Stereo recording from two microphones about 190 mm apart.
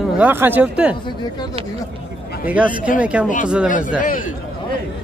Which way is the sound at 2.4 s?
5° right (ahead or behind).